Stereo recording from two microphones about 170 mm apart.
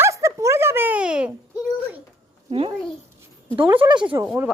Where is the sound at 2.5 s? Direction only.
30° right (ahead or behind).